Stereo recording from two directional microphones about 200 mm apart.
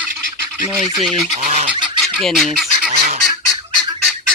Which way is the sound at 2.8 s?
40° right (ahead or behind).